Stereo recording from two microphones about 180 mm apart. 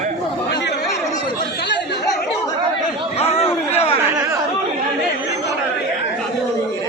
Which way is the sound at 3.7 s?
35° left (ahead or behind).